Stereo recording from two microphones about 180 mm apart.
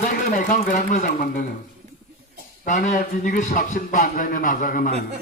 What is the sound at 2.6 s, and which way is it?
A man's voice, 45° left (ahead or behind).